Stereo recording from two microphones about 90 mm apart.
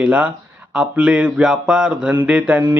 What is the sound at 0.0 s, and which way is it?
Speech, 15° right (ahead or behind).